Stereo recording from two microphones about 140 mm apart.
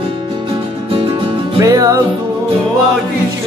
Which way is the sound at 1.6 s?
25° right (ahead or behind).